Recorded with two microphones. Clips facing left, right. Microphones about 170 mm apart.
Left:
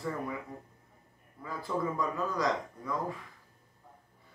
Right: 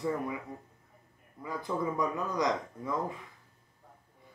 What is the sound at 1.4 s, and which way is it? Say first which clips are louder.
Speech: right 1 dB; 20° right (ahead or behind).